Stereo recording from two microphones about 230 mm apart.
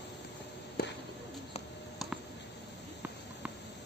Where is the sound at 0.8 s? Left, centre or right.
Left.